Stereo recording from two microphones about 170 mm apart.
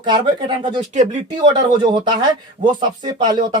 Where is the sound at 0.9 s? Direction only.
45° right (ahead or behind).